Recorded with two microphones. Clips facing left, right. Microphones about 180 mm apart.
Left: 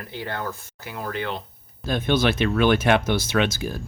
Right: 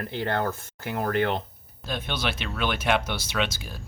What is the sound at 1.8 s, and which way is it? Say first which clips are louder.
Speech: left 9 dB; 45° left (ahead or behind).